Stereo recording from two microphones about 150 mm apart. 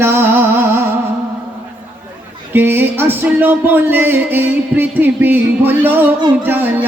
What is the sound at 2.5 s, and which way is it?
Music, 15° right (ahead or behind).